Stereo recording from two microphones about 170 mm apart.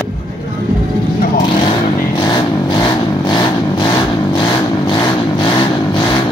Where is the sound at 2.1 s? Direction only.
25° left (ahead or behind).